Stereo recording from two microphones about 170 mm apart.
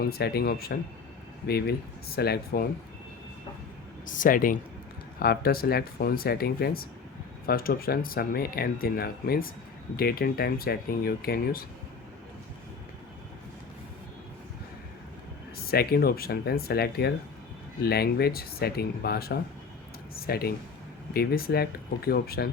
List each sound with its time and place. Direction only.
0.0 s speech: 65° left (ahead or behind)
4.0 s speech: 50° left (ahead or behind)
5.2 s speech: 65° left (ahead or behind)
15.5 s speech: 65° left (ahead or behind)